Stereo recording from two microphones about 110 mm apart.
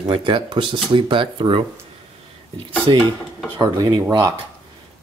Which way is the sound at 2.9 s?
45° right (ahead or behind).